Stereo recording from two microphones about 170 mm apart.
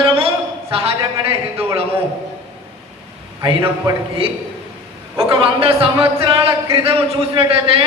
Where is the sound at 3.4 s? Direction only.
30° right (ahead or behind).